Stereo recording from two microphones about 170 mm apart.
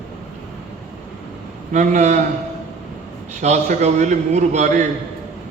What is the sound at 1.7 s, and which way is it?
Speech, 40° right (ahead or behind).